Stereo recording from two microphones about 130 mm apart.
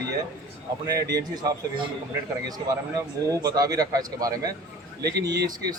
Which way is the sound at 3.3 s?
30° right (ahead or behind).